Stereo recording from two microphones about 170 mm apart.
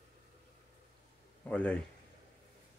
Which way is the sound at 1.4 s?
5° left (ahead or behind).